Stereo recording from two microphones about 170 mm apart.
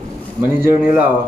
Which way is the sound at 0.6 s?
15° right (ahead or behind).